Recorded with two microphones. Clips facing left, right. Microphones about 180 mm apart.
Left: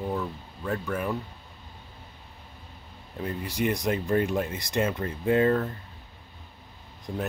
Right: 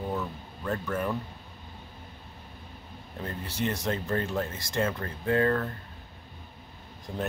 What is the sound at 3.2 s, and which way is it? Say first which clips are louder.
Speech: left 4 dB; 15° left (ahead or behind).